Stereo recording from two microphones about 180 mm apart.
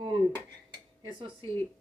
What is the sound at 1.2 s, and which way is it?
Speech, 25° right (ahead or behind).